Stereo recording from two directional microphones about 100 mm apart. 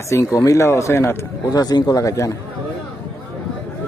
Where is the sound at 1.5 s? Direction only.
40° left (ahead or behind).